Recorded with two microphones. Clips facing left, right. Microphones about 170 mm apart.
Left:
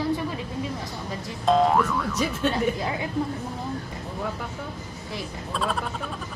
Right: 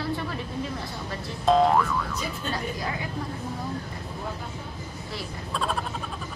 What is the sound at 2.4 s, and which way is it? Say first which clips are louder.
Speech: left 7 dB; 75° left (ahead or behind).